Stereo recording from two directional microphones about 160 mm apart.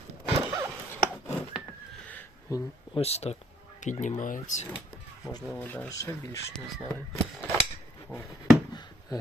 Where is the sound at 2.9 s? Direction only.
40° left (ahead or behind).